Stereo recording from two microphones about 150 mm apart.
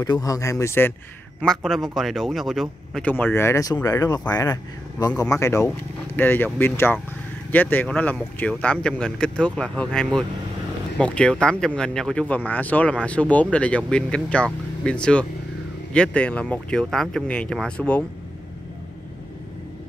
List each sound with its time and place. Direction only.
0.0 s a man's voice: 25° left (ahead or behind)
1.4 s a man's voice: 5° left (ahead or behind)